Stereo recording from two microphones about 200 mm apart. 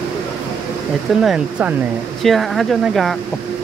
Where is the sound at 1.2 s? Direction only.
5° right (ahead or behind).